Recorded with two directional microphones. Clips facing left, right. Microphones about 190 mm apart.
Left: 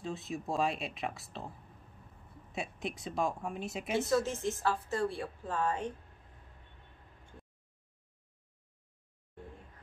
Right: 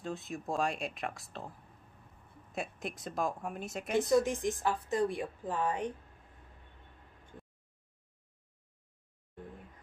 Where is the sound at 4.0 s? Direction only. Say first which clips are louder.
Right 3 dB; 15° right (ahead or behind).